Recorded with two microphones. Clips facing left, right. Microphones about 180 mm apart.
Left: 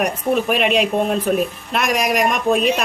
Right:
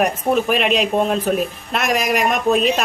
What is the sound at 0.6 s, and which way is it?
Speech, centre (ahead or behind).